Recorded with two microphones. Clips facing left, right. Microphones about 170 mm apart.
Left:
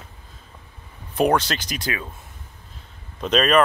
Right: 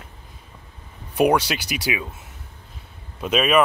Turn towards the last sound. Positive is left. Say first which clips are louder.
# left 1 dB
turn(degrees=-5)  # may be behind; listen again after turning